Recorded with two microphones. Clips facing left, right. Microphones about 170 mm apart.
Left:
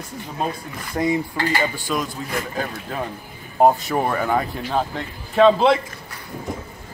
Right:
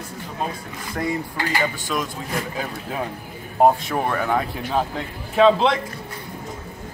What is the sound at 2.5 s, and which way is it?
Speech, 5° right (ahead or behind).